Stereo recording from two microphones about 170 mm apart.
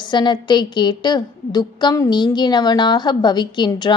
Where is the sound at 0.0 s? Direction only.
25° left (ahead or behind).